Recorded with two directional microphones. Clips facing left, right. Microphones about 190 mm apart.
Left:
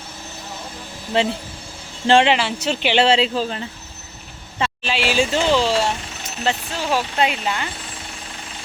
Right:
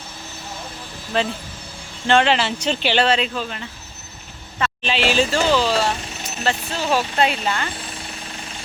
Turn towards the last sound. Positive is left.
turn(degrees=10)  # may be behind; listen again after turning